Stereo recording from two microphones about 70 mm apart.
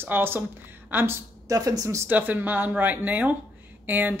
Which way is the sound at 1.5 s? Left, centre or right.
Right.